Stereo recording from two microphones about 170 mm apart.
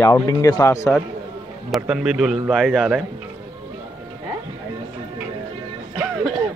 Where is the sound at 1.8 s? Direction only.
5° right (ahead or behind).